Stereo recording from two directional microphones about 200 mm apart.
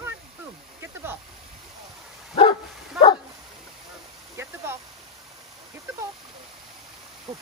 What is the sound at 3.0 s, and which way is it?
Dog, 5° right (ahead or behind).